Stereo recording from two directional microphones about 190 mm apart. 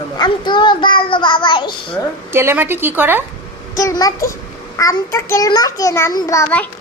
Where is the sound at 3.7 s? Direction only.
20° left (ahead or behind).